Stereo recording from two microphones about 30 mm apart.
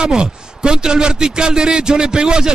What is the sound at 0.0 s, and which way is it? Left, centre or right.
A man's voice, right.